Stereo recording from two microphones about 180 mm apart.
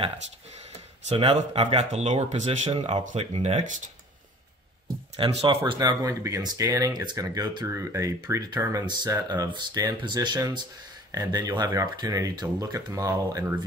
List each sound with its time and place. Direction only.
1.0 s speech: 35° right (ahead or behind)
5.1 s speech: 35° right (ahead or behind)
5.7 s speech: 25° right (ahead or behind)